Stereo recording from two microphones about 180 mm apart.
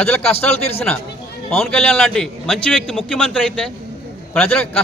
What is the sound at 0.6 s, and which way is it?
Speech, 35° left (ahead or behind).